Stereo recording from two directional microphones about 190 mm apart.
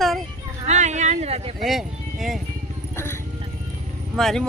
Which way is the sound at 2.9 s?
15° left (ahead or behind).